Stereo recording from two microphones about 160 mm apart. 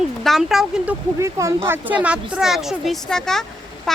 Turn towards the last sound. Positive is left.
turn(degrees=0)  # may be behind; listen again after turning